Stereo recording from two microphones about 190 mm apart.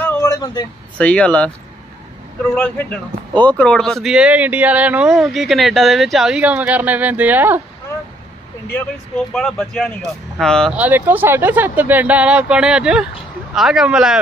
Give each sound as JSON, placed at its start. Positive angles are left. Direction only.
{"t": 0.0, "sound": "vehicle", "side_deg": 15}
{"t": 0.9, "sound": "speech", "side_deg": 5}
{"t": 9.3, "sound": "speech", "side_deg": 0}
{"t": 10.8, "sound": "speech", "side_deg": -10}